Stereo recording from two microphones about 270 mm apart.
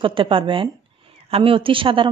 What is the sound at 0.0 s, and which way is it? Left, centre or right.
Speech, centre.